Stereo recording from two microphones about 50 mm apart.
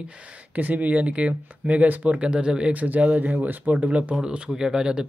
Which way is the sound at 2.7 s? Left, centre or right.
Right.